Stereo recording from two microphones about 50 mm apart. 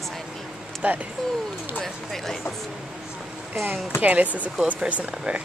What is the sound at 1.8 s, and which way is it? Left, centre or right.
Speech, centre.